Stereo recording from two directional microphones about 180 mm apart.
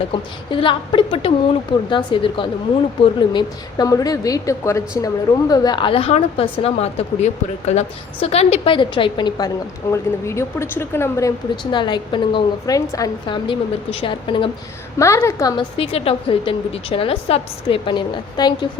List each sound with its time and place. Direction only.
0.1 s a woman's voice: 30° left (ahead or behind)
14.9 s a woman's voice: 15° left (ahead or behind)
15.8 s a woman's voice: 30° left (ahead or behind)